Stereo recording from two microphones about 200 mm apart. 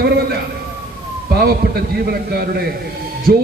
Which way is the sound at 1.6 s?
50° right (ahead or behind).